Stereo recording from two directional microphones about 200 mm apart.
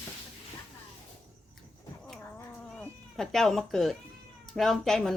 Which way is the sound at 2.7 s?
5° left (ahead or behind).